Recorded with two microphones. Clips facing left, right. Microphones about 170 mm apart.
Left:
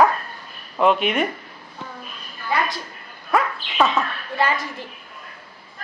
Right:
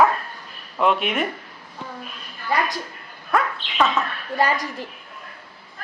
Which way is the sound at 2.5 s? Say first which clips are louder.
Even; 40° right (ahead or behind).